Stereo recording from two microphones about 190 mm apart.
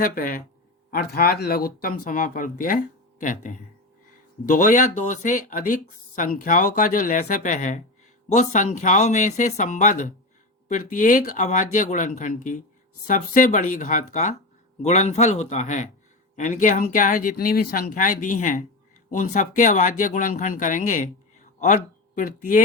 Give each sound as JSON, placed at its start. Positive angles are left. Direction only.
{"t": 0.0, "sound": "speech", "side_deg": 45}